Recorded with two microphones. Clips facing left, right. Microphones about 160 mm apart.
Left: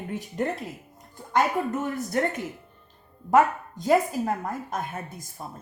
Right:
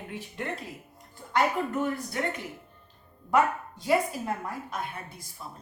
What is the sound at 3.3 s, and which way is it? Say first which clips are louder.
A woman's voice: left 4 dB; 45° left (ahead or behind).